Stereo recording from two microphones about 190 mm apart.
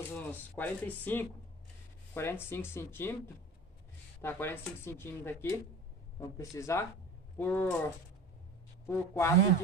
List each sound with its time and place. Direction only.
0.1 s speech: 10° left (ahead or behind)
4.2 s speech: 10° left (ahead or behind)
8.8 s speech: 15° left (ahead or behind)